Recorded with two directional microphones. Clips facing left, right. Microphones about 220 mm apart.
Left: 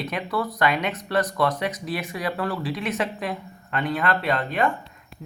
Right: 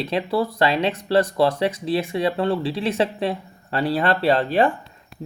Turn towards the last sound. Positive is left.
turn(degrees=-30)  # may be behind; listen again after turning